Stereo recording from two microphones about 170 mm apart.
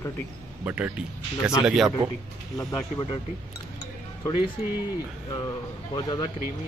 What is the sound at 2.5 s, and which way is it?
Speech, 25° left (ahead or behind).